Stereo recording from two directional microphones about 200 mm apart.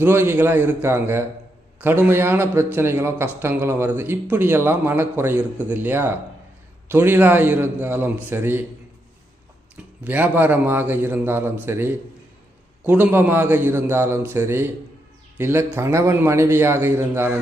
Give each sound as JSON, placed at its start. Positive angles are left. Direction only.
{"t": 0.0, "sound": "a man's voice", "side_deg": -10}
{"t": 10.0, "sound": "a man's voice", "side_deg": -10}